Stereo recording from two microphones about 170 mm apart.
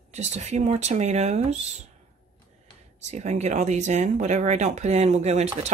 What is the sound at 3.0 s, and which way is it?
Speech, 40° right (ahead or behind).